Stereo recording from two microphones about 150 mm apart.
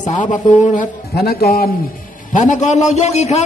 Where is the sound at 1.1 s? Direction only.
90° left.